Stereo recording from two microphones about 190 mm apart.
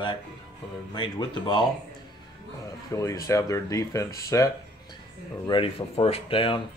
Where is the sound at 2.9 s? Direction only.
20° left (ahead or behind).